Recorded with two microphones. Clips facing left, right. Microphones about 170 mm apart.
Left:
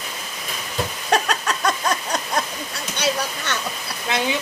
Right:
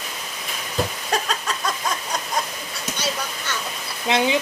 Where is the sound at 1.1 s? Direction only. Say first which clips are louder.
Left 5 dB; 70° left (ahead or behind).